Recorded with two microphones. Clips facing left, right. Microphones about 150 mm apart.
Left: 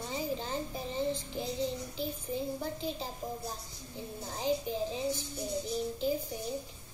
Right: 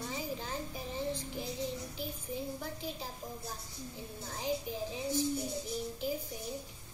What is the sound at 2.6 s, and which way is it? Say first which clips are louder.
Speech: left 5 dB; 30° left (ahead or behind).